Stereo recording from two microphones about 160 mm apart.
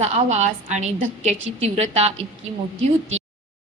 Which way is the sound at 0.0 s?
45° right (ahead or behind).